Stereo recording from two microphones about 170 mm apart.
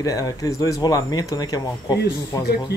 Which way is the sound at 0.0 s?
20° left (ahead or behind).